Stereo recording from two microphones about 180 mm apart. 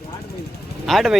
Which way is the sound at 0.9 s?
Centre (ahead or behind).